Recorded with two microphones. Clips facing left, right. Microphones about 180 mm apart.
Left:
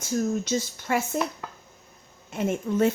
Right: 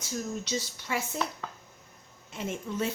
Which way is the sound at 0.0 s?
50° left (ahead or behind).